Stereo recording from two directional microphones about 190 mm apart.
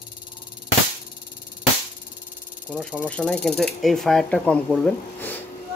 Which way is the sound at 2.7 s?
Centre (ahead or behind).